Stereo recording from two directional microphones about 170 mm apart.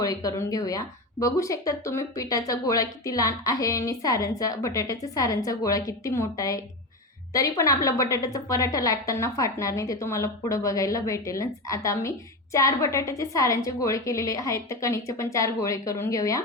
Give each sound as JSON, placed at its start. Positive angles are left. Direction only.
{"t": 0.0, "sound": "speech", "side_deg": 20}